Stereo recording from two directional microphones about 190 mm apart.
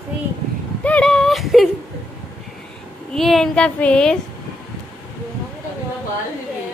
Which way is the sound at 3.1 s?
Centre (ahead or behind).